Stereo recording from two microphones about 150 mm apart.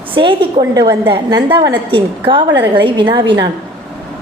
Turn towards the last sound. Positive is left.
turn(degrees=-30)  # may be behind; listen again after turning